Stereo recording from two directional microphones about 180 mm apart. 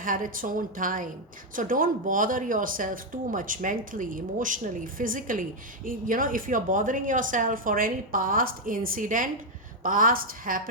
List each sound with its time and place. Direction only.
0.0 s speech: 50° right (ahead or behind)